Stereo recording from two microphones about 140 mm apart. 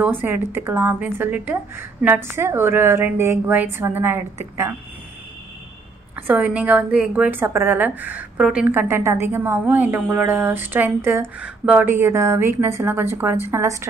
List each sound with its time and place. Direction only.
0.0 s a woman's voice: 15° right (ahead or behind)
6.1 s a woman's voice: 10° right (ahead or behind)
8.6 s a woman's voice: 15° right (ahead or behind)